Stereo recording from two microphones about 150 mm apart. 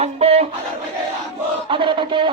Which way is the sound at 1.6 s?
35° right (ahead or behind).